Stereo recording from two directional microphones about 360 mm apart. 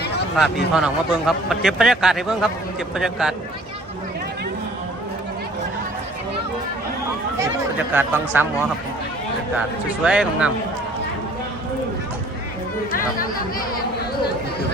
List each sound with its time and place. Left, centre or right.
0.3 s a man's voice: centre
7.3 s a man's voice: centre
9.6 s a man's voice: centre
12.9 s chatter: left